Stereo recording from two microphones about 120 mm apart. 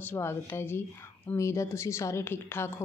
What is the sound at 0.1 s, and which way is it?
A woman's voice, 20° left (ahead or behind).